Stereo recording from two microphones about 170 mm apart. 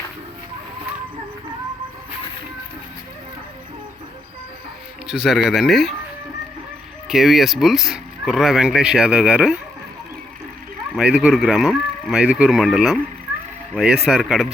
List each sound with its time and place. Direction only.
5.0 s speech: 5° right (ahead or behind)
7.1 s speech: centre (ahead or behind)
10.9 s speech: 5° right (ahead or behind)
14.0 s speech: centre (ahead or behind)